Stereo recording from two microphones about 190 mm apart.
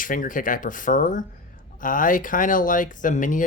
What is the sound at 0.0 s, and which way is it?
Speech, 45° left (ahead or behind).